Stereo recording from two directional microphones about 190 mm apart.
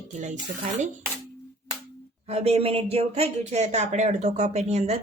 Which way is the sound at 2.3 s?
30° right (ahead or behind).